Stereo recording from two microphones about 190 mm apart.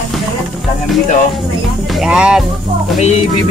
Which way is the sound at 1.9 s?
5° right (ahead or behind).